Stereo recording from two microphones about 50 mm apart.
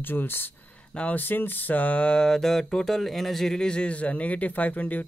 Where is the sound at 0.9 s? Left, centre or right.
Left.